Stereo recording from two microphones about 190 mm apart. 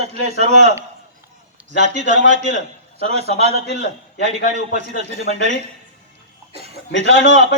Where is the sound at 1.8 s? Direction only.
40° right (ahead or behind).